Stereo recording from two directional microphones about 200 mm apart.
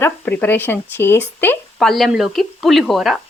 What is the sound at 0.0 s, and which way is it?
Speech, 10° left (ahead or behind).